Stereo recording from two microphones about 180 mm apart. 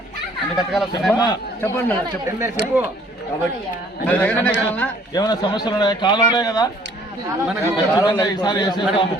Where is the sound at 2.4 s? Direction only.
15° right (ahead or behind).